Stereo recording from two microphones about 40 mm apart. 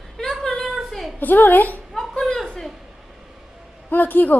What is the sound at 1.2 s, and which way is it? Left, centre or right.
Speech, left.